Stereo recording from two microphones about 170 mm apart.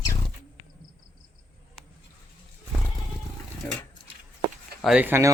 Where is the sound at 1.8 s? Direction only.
Centre (ahead or behind).